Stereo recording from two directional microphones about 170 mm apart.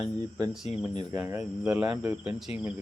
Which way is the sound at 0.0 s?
25° right (ahead or behind).